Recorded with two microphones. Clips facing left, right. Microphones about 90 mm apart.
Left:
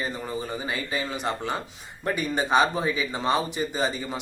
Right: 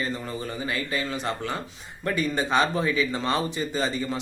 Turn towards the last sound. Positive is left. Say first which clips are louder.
# right 1 dB
turn(degrees=15)  # may be behind; listen again after turning